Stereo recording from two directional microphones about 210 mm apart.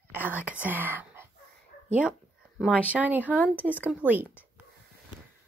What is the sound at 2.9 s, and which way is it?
Speech, 5° right (ahead or behind).